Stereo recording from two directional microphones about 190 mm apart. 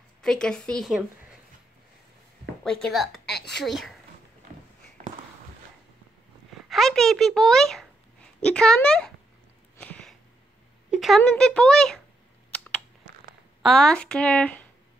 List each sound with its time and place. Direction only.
0.2 s speech: 5° left (ahead or behind)
2.6 s speech: 5° left (ahead or behind)
3.1 s a woman's voice: 60° left (ahead or behind)
3.6 s speech: centre (ahead or behind)
4.5 s walk: 45° right (ahead or behind)
6.7 s a child's voice: centre (ahead or behind)
9.8 s a sound: 5° left (ahead or behind)
10.9 s speech: centre (ahead or behind)
12.5 s typing: 5° left (ahead or behind)
13.6 s speech: centre (ahead or behind)